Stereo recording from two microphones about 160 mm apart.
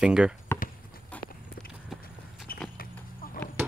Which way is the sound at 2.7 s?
65° left (ahead or behind).